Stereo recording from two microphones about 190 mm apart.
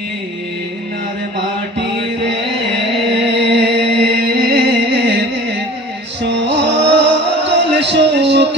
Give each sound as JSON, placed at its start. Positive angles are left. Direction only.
{"t": 3.3, "sound": "music", "side_deg": -65}